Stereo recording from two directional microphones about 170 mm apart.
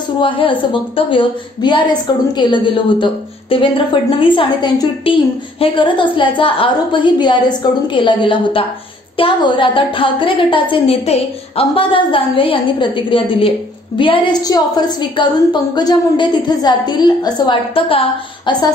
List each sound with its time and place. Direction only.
0.2 s a woman's voice: 30° left (ahead or behind)